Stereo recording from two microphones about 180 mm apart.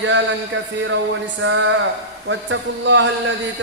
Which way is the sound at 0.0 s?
90° right.